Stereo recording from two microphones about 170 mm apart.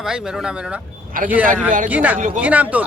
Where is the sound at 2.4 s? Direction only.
10° right (ahead or behind).